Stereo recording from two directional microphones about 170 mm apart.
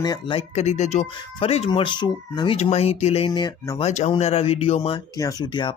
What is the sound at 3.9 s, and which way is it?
Speech, 40° left (ahead or behind).